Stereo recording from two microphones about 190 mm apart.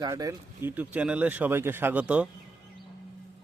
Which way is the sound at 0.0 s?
20° right (ahead or behind).